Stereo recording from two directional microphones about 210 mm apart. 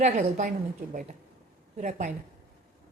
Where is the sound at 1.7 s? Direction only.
35° right (ahead or behind).